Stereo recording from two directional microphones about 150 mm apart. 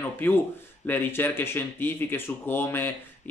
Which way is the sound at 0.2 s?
10° left (ahead or behind).